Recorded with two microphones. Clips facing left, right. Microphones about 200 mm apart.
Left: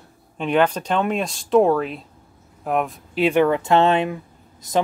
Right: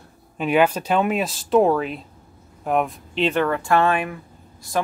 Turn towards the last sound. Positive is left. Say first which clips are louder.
# right 1 dB
turn(degrees=20)  # may be behind; listen again after turning